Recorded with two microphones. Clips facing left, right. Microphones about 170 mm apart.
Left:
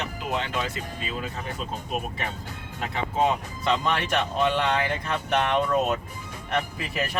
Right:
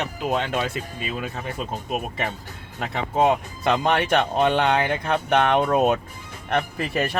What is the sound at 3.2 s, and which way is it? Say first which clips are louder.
Speech: right 5 dB; 55° right (ahead or behind).